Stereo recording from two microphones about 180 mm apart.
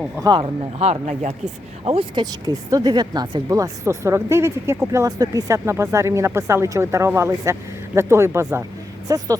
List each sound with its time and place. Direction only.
0.2 s speech: 25° right (ahead or behind)